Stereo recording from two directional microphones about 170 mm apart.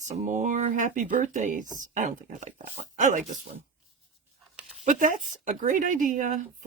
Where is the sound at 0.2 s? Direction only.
45° right (ahead or behind).